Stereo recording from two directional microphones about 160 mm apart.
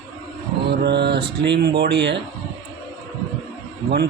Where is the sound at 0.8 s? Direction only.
90° right.